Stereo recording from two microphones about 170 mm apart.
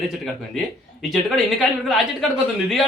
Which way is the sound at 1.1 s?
Centre (ahead or behind).